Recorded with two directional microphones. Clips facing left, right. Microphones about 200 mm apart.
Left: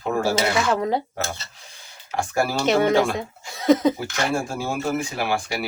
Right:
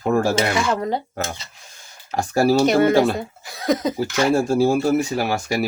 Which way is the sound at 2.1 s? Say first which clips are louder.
Right 6 dB; 40° right (ahead or behind).